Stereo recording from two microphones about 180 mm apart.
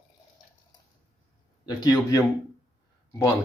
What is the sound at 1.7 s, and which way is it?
Speech, 20° left (ahead or behind).